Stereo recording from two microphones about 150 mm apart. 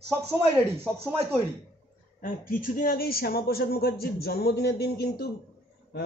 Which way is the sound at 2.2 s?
65° left (ahead or behind).